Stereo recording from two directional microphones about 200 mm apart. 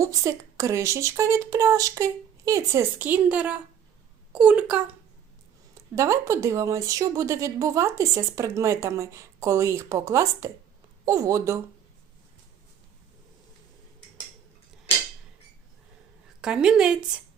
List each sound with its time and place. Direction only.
0.0 s speech: 15° right (ahead or behind)
16.4 s speech: 5° right (ahead or behind)